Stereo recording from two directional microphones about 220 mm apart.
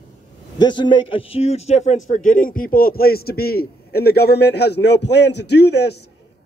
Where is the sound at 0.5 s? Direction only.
20° left (ahead or behind); by 5.9 s 50° left (ahead or behind).